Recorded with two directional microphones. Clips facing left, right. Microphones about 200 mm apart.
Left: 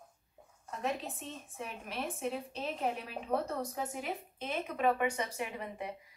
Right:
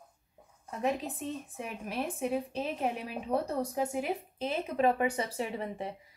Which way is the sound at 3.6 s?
15° right (ahead or behind).